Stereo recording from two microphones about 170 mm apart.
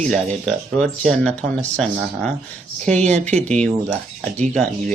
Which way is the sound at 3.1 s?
40° right (ahead or behind).